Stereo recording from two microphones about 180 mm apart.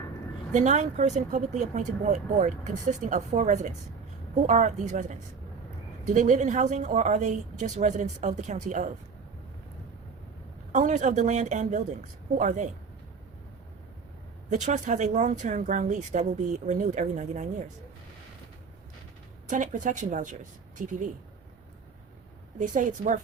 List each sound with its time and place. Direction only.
0.5 s speech: 40° right (ahead or behind)
6.1 s speech: 40° right (ahead or behind)
10.7 s speech: 40° right (ahead or behind)
14.5 s speech: 40° right (ahead or behind)
19.5 s speech: 45° right (ahead or behind)
22.5 s speech: 45° right (ahead or behind)